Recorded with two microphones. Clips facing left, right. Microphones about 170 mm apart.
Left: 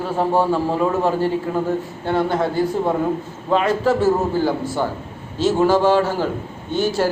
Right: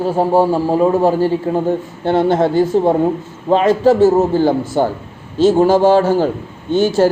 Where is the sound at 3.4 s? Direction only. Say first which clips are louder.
Right 6 dB; 35° right (ahead or behind).